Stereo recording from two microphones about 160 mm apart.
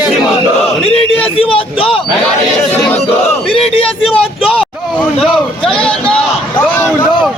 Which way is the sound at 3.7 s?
35° left (ahead or behind).